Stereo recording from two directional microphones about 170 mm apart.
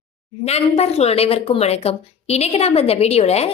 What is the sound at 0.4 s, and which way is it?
A woman's voice, 40° left (ahead or behind).